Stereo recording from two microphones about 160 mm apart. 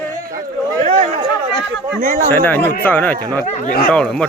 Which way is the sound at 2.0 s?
55° right (ahead or behind).